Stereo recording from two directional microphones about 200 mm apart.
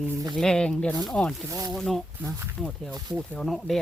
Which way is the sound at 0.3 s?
5° left (ahead or behind).